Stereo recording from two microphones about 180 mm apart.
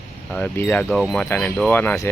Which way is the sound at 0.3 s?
10° left (ahead or behind).